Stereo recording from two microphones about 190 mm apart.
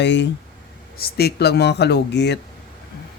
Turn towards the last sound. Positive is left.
turn(degrees=60)  # may be behind; listen again after turning